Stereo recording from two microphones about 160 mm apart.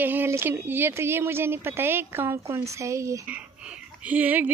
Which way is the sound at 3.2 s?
5° right (ahead or behind).